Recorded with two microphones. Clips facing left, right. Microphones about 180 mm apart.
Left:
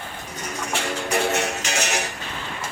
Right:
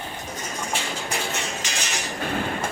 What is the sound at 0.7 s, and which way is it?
Music, 65° left (ahead or behind).